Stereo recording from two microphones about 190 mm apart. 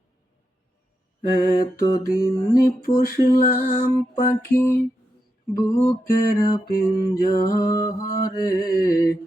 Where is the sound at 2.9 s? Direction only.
50° left (ahead or behind).